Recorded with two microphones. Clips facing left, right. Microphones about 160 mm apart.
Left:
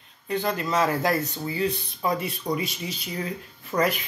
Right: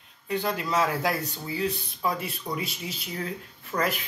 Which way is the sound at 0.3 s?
10° right (ahead or behind).